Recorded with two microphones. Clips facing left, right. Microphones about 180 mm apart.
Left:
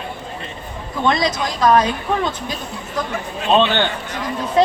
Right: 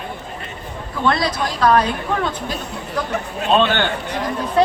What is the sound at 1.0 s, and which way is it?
Speech, 15° left (ahead or behind).